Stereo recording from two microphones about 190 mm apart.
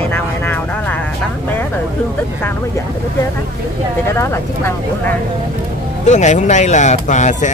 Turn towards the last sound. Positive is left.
turn(degrees=40)  # may be behind; listen again after turning